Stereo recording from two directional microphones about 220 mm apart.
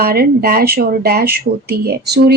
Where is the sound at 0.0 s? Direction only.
45° right (ahead or behind).